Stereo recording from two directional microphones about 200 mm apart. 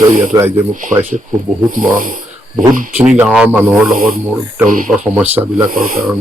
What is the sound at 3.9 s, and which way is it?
Speech, 45° right (ahead or behind).